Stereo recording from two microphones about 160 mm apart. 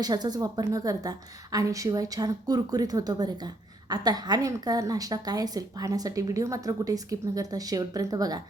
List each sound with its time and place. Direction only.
0.0 s a woman's voice: 25° right (ahead or behind)